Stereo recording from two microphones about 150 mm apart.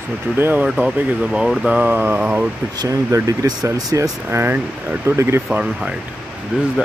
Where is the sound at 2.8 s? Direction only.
20° right (ahead or behind).